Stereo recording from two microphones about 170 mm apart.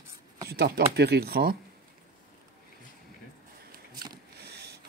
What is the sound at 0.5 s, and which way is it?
Speech, 70° right (ahead or behind).